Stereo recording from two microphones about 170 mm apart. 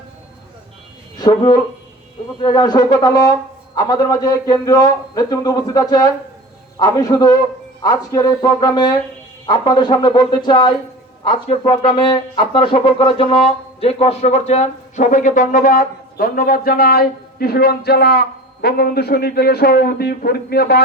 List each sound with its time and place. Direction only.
1.2 s a man's voice: 25° left (ahead or behind); by 20.8 s 70° left (ahead or behind)